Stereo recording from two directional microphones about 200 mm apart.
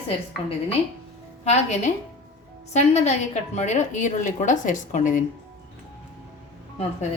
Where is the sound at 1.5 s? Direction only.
35° left (ahead or behind).